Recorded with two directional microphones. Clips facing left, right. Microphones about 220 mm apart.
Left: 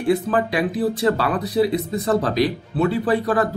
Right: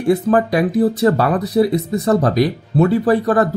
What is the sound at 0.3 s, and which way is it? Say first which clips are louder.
Speech: right 6 dB; 45° right (ahead or behind).